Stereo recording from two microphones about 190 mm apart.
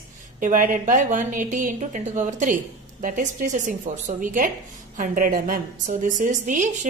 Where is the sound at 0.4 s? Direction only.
45° right (ahead or behind).